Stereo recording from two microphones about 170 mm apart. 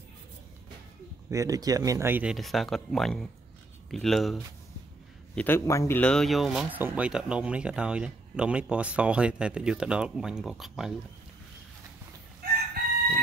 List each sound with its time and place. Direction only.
1.3 s speech: 20° right (ahead or behind)
2.3 s speech: centre (ahead or behind)